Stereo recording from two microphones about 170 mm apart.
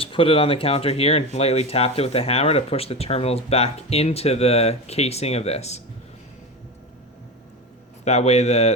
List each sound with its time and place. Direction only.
0.0 s speech: 30° left (ahead or behind)
8.0 s speech: 40° left (ahead or behind)